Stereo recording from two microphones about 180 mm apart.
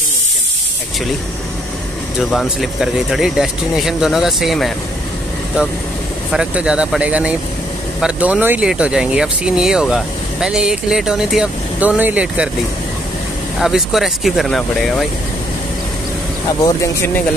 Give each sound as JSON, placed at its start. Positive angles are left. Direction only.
{"t": 2.1, "sound": "speech", "side_deg": 0}
{"t": 6.3, "sound": "speech", "side_deg": -5}
{"t": 13.6, "sound": "speech", "side_deg": 0}
{"t": 16.6, "sound": "speech", "side_deg": 15}